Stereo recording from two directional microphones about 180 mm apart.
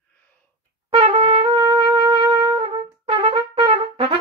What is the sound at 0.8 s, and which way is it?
Trumpet, 30° right (ahead or behind).